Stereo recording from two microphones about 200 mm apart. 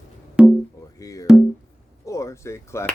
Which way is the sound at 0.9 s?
15° left (ahead or behind).